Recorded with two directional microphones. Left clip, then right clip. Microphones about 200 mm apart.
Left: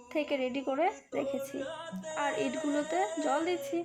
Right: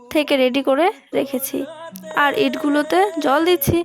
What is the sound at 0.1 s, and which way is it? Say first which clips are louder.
A woman's voice: right 15 dB; 60° right (ahead or behind).